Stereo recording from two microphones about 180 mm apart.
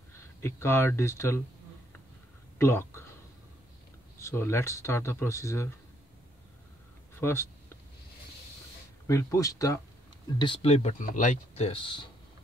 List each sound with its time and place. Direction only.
0.2 s speech: 15° left (ahead or behind)
2.6 s speech: 15° left (ahead or behind)
4.2 s speech: 15° left (ahead or behind)
7.2 s speech: 15° left (ahead or behind)
9.0 s speech: 15° left (ahead or behind)
10.4 s speech: 30° left (ahead or behind)